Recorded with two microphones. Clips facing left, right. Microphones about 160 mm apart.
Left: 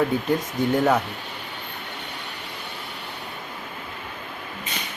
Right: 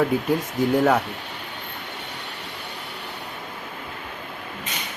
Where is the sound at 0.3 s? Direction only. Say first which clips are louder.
Right 1 dB; 5° right (ahead or behind).